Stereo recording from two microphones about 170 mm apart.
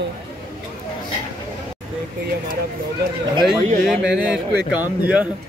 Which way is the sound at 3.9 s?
5° right (ahead or behind).